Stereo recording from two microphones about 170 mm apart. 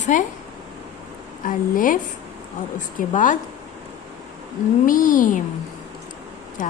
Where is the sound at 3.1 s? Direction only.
50° left (ahead or behind).